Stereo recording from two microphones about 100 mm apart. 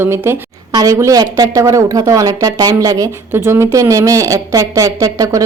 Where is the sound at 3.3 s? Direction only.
25° right (ahead or behind).